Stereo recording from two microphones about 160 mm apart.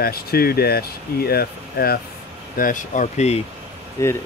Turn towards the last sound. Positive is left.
turn(degrees=20)  # may be behind; listen again after turning